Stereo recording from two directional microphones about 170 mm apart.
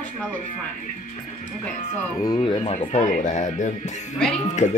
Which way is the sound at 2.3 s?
35° left (ahead or behind).